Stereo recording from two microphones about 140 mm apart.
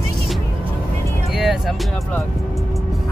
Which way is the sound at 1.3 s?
Centre (ahead or behind).